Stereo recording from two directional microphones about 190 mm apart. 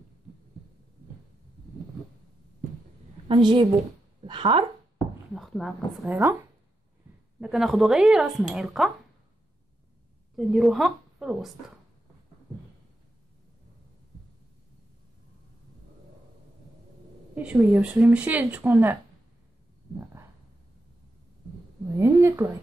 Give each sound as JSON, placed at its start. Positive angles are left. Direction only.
{"t": 3.3, "sound": "a woman's voice", "side_deg": -25}
{"t": 5.3, "sound": "a sound", "side_deg": 0}
{"t": 6.0, "sound": "speech", "side_deg": -15}
{"t": 7.3, "sound": "speech", "side_deg": 0}
{"t": 10.3, "sound": "a woman's voice", "side_deg": 0}
{"t": 17.4, "sound": "speech", "side_deg": -5}
{"t": 21.9, "sound": "speech", "side_deg": -15}